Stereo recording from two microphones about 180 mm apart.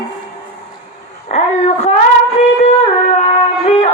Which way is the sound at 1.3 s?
40° left (ahead or behind).